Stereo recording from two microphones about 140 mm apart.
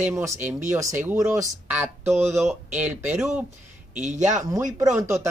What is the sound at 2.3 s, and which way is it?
Speech, 5° right (ahead or behind).